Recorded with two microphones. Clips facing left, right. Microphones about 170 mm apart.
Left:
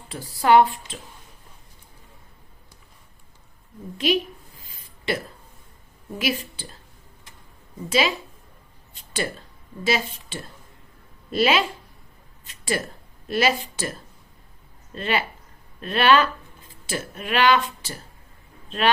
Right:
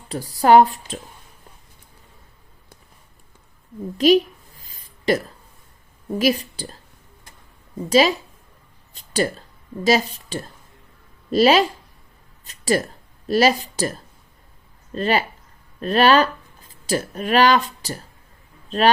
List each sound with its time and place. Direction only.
0.1 s speech: 40° right (ahead or behind)
3.9 s speech: 40° right (ahead or behind)
4.6 s a sound: 40° right (ahead or behind)
6.1 s speech: 40° right (ahead or behind)
7.9 s speech: 40° right (ahead or behind)
9.0 s a sound: 40° right (ahead or behind)
9.8 s speech: 40° right (ahead or behind)
12.5 s a sound: 40° right (ahead or behind)
13.2 s speech: 40° right (ahead or behind)
14.9 s speech: 40° right (ahead or behind)